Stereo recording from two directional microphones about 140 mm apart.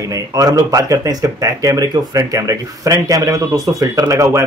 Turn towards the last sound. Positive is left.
turn(degrees=-20)  # may be behind; listen again after turning